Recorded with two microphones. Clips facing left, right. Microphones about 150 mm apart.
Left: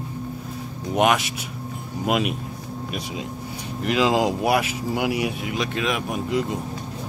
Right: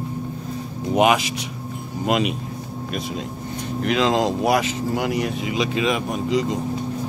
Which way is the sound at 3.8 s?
5° left (ahead or behind).